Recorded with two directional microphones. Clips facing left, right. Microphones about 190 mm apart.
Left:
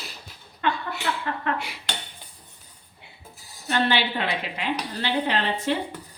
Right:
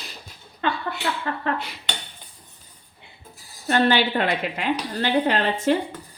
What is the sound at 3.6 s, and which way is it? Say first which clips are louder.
A woman's voice: right 4 dB; 45° right (ahead or behind).